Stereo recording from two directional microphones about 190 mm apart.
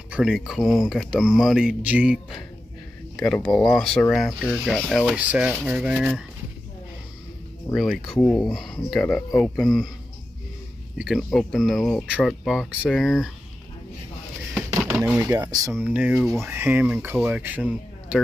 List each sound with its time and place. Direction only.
0.1 s speech: centre (ahead or behind)
7.7 s speech: centre (ahead or behind)
11.0 s speech: 5° right (ahead or behind)
14.8 s a sound: centre (ahead or behind)
15.1 s speech: 15° right (ahead or behind)
15.7 s speech: 5° right (ahead or behind)